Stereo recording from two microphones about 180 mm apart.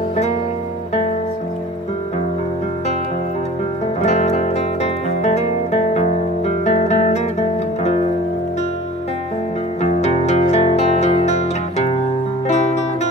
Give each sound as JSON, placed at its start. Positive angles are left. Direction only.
{"t": 4.0, "sound": "music", "side_deg": 40}
{"t": 9.8, "sound": "music", "side_deg": 40}